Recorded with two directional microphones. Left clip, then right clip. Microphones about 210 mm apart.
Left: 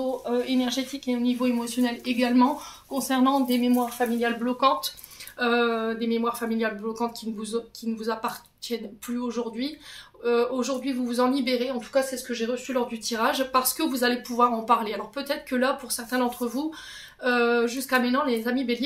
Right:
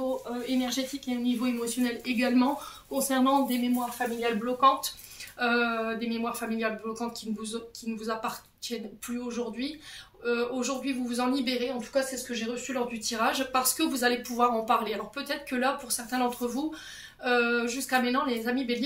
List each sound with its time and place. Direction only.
0.5 s speech: 40° left (ahead or behind)
5.4 s speech: 35° left (ahead or behind)